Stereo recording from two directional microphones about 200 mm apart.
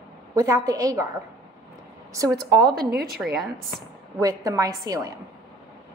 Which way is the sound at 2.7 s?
50° right (ahead or behind).